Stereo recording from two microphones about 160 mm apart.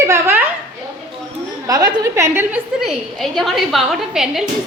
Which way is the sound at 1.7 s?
20° right (ahead or behind).